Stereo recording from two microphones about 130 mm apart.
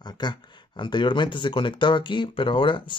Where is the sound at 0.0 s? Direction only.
35° left (ahead or behind).